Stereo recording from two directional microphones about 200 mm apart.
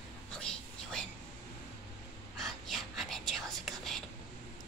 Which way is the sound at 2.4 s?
Centre (ahead or behind).